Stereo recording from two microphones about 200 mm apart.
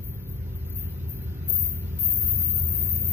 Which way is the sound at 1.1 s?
10° right (ahead or behind).